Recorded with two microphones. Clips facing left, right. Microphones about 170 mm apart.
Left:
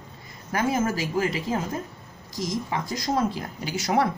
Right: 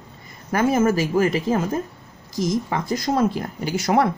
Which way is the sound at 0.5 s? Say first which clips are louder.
Right 6 dB; 55° right (ahead or behind).